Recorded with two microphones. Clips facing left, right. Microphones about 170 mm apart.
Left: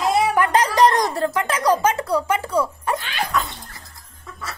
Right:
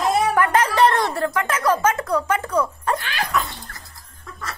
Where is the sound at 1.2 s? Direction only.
15° left (ahead or behind).